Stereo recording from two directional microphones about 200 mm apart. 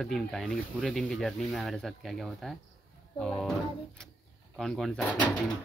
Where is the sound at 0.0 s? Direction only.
Centre (ahead or behind).